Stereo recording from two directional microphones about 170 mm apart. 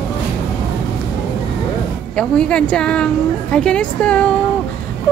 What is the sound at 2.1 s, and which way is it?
Speech, 5° left (ahead or behind).